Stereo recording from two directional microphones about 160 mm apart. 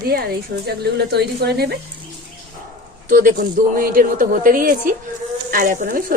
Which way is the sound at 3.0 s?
55° right (ahead or behind).